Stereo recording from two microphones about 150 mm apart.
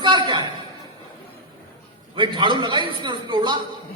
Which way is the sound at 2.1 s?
30° right (ahead or behind).